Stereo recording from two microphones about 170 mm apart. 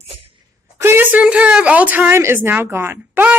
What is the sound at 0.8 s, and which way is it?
A woman's voice, 10° right (ahead or behind).